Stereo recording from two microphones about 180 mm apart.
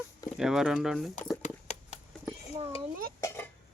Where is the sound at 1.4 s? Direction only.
40° left (ahead or behind).